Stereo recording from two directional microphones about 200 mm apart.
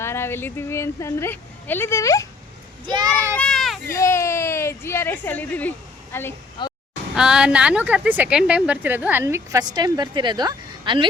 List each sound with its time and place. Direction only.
0.0 s speech: 10° left (ahead or behind)
2.8 s a child's voice: 20° right (ahead or behind)
3.3 s a sound: 5° left (ahead or behind)
3.9 s a woman's voice: 15° left (ahead or behind)
6.6 s speech: 20° left (ahead or behind)
7.2 s a woman's voice: 5° right (ahead or behind); by 11.1 s 25° right (ahead or behind)